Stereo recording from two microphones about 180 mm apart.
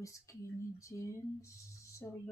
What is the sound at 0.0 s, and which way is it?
Speech, 15° left (ahead or behind).